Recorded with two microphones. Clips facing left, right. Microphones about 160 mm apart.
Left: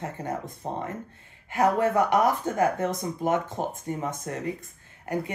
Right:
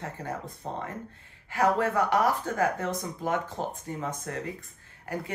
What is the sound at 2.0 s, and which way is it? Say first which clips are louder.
Speech: left 2 dB; 15° left (ahead or behind).